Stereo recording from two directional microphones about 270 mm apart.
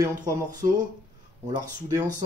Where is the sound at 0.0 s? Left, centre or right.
Centre.